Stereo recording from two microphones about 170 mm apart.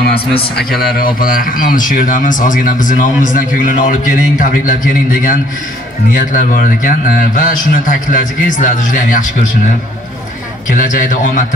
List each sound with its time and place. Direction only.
0.0 s a sound: 65° left (ahead or behind)
0.6 s a man's voice: 60° left (ahead or behind)
6.1 s a man's voice: 50° left (ahead or behind)
10.7 s a man's voice: 50° left (ahead or behind)